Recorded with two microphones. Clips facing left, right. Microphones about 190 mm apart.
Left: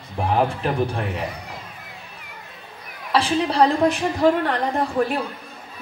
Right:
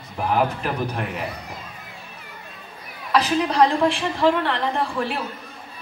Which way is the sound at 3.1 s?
30° left (ahead or behind).